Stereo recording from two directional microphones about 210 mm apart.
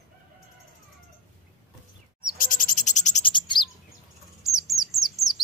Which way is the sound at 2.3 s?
40° left (ahead or behind).